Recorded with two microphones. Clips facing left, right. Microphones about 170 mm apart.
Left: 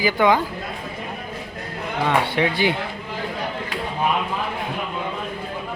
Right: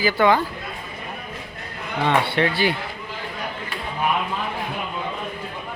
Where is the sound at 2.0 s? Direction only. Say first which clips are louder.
Right 1 dB; 15° left (ahead or behind).